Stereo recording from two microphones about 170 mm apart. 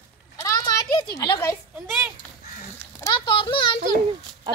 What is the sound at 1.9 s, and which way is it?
Speech, 5° right (ahead or behind).